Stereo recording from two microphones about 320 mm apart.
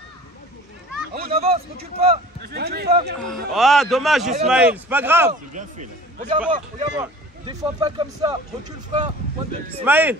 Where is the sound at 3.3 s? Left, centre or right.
Centre.